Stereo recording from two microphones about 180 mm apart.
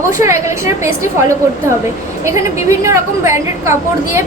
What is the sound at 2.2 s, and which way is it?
A woman's voice, 15° right (ahead or behind).